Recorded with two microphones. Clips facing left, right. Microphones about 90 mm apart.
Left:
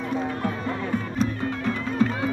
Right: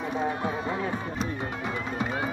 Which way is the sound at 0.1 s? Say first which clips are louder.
Left 1 dB; 20° right (ahead or behind).